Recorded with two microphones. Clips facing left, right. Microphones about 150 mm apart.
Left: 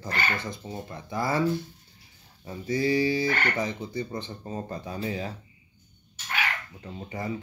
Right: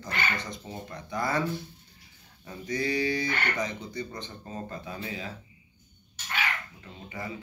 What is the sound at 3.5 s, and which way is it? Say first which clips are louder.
Speech: left 3 dB; 30° left (ahead or behind).